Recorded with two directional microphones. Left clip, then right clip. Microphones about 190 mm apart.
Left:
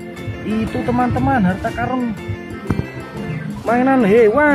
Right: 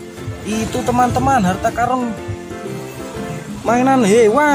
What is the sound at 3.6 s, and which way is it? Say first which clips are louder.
Speech: right 1 dB; 15° right (ahead or behind).